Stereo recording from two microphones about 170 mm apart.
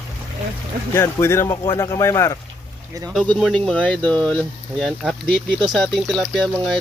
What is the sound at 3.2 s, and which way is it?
Speech, centre (ahead or behind).